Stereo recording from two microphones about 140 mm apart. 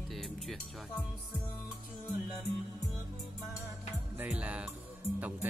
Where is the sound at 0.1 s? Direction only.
Centre (ahead or behind).